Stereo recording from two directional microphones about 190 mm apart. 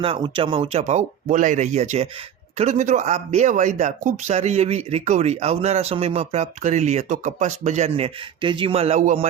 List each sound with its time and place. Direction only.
0.0 s speech: 30° right (ahead or behind)